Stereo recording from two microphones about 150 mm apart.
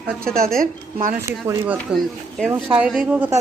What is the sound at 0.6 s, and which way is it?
Speech, 65° right (ahead or behind).